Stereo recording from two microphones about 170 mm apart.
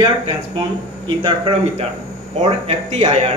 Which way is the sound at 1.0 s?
30° right (ahead or behind).